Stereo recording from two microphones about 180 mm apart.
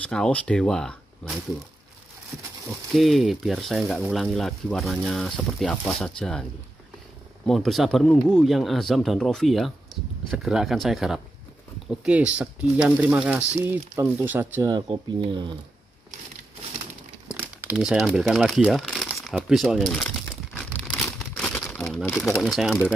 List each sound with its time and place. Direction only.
0.0 s speech: 5° left (ahead or behind)
2.9 s speech: centre (ahead or behind)
7.4 s speech: centre (ahead or behind)
14.7 s speech: 25° right (ahead or behind)
17.3 s speech: 10° right (ahead or behind)
21.4 s crumpling: 5° left (ahead or behind)
22.3 s speech: centre (ahead or behind)